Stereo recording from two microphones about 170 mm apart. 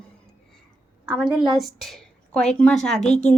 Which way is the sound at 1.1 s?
Centre (ahead or behind).